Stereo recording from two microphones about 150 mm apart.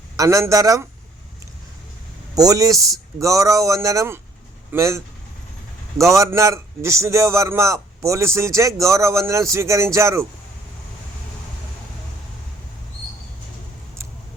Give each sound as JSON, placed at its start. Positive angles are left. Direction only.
{"t": 0.2, "sound": "a man's voice", "side_deg": -20}
{"t": 2.3, "sound": "a man's voice", "side_deg": -25}